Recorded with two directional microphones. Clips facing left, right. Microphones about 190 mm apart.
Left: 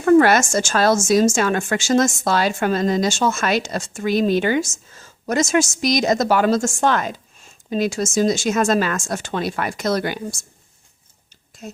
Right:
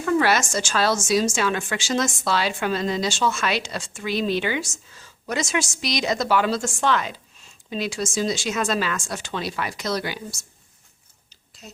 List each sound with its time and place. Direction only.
0.0 s a woman's voice: 50° left (ahead or behind)
11.6 s a woman's voice: 50° left (ahead or behind)